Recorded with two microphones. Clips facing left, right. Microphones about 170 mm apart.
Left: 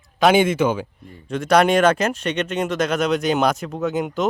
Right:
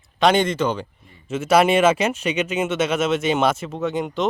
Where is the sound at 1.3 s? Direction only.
5° right (ahead or behind).